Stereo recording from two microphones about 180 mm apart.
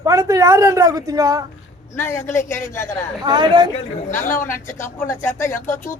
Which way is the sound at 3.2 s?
25° right (ahead or behind).